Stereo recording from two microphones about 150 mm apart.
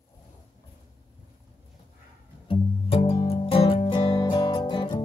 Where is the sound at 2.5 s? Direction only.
40° left (ahead or behind).